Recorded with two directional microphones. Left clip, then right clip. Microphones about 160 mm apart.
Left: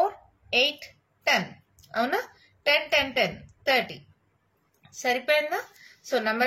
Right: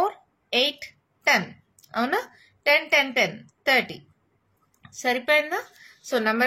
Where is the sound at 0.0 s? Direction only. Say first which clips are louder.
Even; 45° right (ahead or behind).